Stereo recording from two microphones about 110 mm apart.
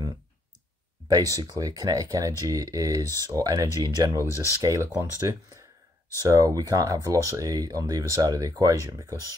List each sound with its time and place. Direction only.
1.0 s speech: 30° right (ahead or behind)
6.2 s speech: 30° right (ahead or behind)